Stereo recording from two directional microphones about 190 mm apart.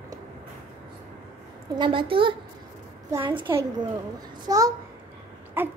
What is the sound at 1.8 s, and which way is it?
A woman's voice, 25° right (ahead or behind).